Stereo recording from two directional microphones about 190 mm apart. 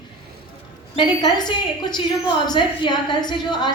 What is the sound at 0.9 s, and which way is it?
A woman's voice, 20° left (ahead or behind).